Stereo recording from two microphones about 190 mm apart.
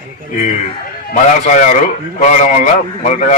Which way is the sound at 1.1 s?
40° left (ahead or behind).